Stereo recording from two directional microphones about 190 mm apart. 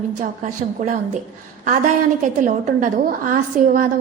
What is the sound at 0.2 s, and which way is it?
A woman's voice, 40° right (ahead or behind).